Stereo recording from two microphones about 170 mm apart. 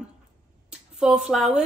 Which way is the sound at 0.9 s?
5° right (ahead or behind).